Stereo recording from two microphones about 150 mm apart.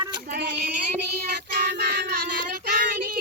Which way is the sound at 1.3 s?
90° right.